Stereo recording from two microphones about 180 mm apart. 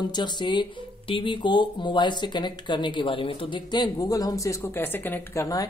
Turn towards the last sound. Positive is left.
turn(degrees=15)  # may be behind; listen again after turning